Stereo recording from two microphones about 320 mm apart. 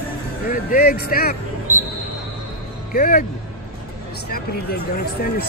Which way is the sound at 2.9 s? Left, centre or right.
Left.